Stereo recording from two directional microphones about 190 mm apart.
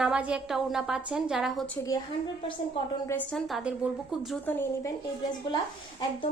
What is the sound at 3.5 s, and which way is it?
Speech, 5° right (ahead or behind).